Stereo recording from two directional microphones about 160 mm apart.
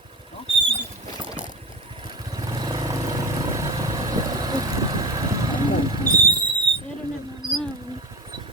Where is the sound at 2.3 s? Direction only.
25° right (ahead or behind).